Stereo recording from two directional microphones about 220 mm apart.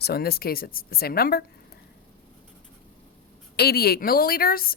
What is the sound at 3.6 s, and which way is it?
Speech, 45° left (ahead or behind).